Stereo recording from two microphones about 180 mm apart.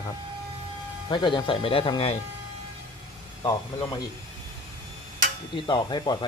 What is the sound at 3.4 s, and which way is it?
Speech, 20° left (ahead or behind).